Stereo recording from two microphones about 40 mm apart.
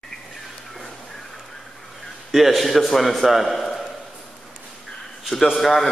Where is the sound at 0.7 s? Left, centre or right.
Centre.